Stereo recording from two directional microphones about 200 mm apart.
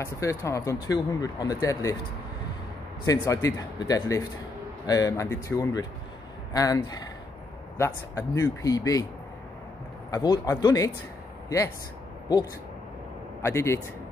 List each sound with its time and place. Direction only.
0.0 s speech: 15° left (ahead or behind)
3.1 s speech: 15° left (ahead or behind)
10.1 s speech: 20° left (ahead or behind)
13.4 s speech: 15° left (ahead or behind)